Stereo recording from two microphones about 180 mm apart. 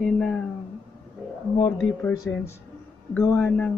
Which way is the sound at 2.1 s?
15° left (ahead or behind).